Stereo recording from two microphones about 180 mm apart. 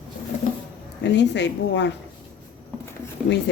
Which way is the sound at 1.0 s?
75° left (ahead or behind).